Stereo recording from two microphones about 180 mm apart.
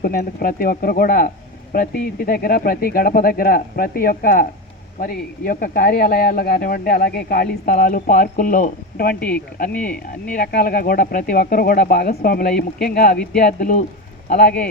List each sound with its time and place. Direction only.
0.0 s speech: 55° left (ahead or behind)
9.7 s speech: 5° left (ahead or behind)
10.2 s speech: 50° left (ahead or behind)